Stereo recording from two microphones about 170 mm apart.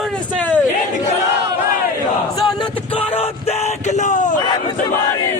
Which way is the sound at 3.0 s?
40° left (ahead or behind).